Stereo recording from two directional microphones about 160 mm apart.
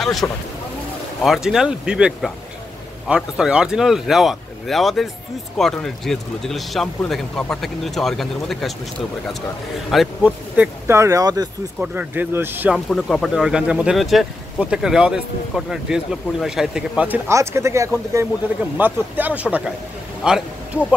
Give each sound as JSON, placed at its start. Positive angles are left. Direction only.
{"t": 0.2, "sound": "speech", "side_deg": 10}
{"t": 1.2, "sound": "speech", "side_deg": 0}
{"t": 9.8, "sound": "speech", "side_deg": -5}
{"t": 11.8, "sound": "speech", "side_deg": -10}
{"t": 12.7, "sound": "speech", "side_deg": 0}
{"t": 17.3, "sound": "speech", "side_deg": -20}